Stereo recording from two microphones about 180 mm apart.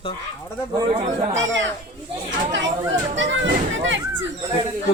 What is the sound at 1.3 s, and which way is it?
Speech, 90° right.